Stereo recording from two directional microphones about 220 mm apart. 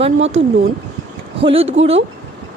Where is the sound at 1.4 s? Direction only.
25° right (ahead or behind).